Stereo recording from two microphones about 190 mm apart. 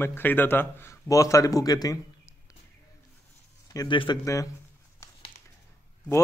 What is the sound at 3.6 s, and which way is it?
Speech, 20° left (ahead or behind).